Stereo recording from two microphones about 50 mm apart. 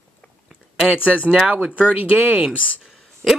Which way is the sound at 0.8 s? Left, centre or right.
Right.